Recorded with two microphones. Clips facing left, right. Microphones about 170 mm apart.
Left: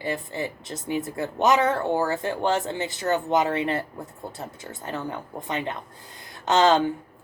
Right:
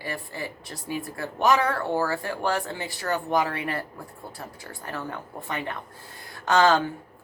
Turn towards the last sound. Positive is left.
turn(degrees=20)  # may be behind; listen again after turning